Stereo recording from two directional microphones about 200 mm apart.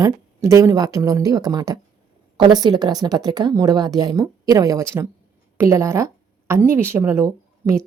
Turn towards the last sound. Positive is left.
turn(degrees=-15)  # may be behind; listen again after turning